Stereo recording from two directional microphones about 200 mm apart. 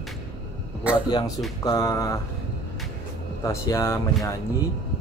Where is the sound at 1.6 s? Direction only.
20° left (ahead or behind).